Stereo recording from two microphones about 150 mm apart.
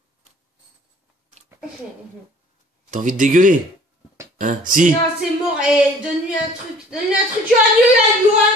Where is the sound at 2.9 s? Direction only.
55° right (ahead or behind).